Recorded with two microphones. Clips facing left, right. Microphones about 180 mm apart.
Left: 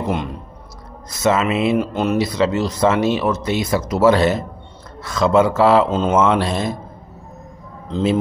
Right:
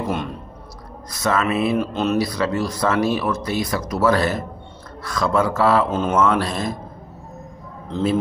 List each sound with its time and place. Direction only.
1.1 s speech: 25° left (ahead or behind)
2.0 s speech: 15° left (ahead or behind)
7.9 s speech: 25° left (ahead or behind)